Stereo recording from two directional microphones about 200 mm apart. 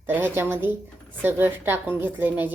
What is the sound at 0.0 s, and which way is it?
A woman's voice, 10° right (ahead or behind).